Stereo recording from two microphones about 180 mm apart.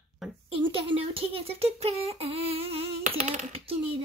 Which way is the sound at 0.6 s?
30° right (ahead or behind).